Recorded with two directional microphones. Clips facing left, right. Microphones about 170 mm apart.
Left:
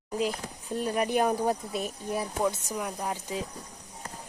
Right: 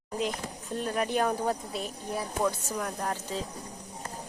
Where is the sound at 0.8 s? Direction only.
10° left (ahead or behind).